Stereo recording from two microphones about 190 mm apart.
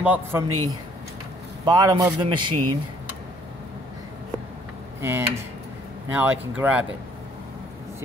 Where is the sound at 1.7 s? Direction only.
20° right (ahead or behind).